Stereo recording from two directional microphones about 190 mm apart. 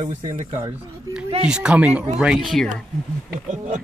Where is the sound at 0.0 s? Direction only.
25° right (ahead or behind).